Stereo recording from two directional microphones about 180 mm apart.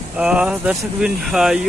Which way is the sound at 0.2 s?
5° right (ahead or behind).